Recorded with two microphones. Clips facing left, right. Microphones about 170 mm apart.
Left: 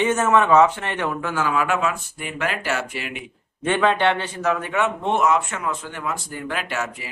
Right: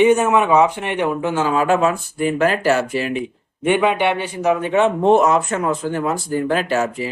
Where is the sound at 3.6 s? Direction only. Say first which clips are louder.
Right 3 dB; 15° right (ahead or behind); by 7.1 s 35° right (ahead or behind).